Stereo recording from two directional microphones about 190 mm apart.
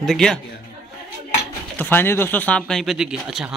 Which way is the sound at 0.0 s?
5° left (ahead or behind).